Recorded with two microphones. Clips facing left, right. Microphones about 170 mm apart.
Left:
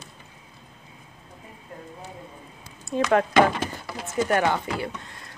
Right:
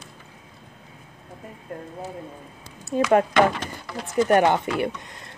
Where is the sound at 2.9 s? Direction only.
10° right (ahead or behind).